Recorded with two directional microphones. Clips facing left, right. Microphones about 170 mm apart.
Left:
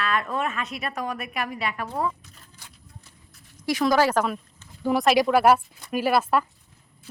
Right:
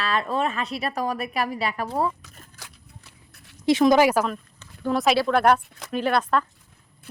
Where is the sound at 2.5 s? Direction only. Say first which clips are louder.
Right 2 dB; 80° right.